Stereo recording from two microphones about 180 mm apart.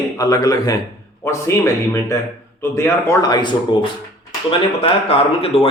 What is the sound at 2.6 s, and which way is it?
Speech, 15° left (ahead or behind).